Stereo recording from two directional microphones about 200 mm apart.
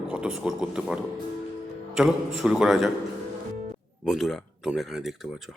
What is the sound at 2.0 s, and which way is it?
Speech, centre (ahead or behind).